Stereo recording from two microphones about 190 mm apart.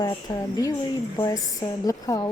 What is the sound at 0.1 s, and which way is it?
A woman's voice, 20° left (ahead or behind).